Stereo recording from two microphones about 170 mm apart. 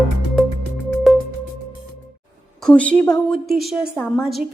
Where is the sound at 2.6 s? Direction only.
5° left (ahead or behind).